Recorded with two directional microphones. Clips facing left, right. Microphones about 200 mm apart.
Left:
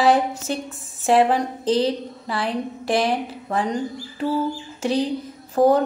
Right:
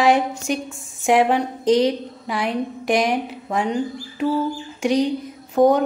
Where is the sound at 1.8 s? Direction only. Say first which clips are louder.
Right 2 dB; 15° right (ahead or behind).